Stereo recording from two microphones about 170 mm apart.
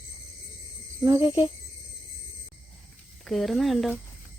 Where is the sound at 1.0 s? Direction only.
15° right (ahead or behind).